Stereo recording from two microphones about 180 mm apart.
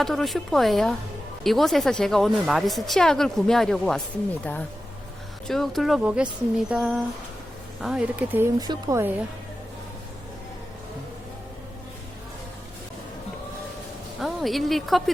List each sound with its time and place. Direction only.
0.0 s a woman's voice: centre (ahead or behind)
5.5 s a woman's voice: centre (ahead or behind)
14.2 s speech: centre (ahead or behind)